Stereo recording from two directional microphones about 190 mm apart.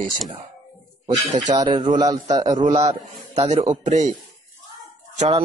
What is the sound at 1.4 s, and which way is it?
A man's voice, 20° right (ahead or behind).